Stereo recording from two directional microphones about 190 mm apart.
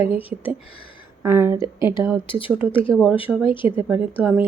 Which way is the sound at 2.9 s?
Centre (ahead or behind).